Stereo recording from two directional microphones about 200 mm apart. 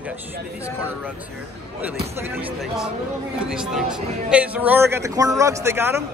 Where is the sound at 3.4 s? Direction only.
5° right (ahead or behind).